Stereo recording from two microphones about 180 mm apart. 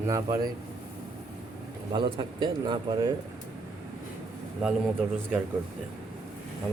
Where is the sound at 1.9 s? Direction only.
25° right (ahead or behind).